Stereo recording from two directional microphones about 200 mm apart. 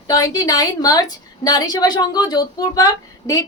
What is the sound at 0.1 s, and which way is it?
A woman's voice, 15° left (ahead or behind).